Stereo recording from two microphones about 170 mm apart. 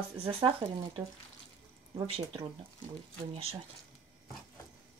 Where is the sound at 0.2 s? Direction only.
30° right (ahead or behind).